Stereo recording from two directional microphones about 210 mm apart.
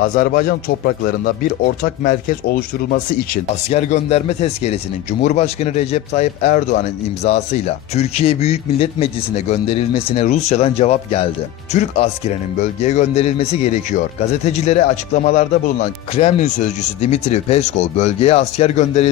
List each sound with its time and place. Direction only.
0.0 s speech: 45° left (ahead or behind)
3.7 s speech: 30° left (ahead or behind)